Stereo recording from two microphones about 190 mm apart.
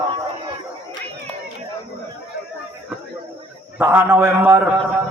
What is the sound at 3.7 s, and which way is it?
Speech, 10° right (ahead or behind).